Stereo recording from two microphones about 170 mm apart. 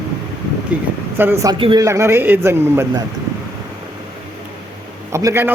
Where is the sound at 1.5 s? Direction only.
30° right (ahead or behind).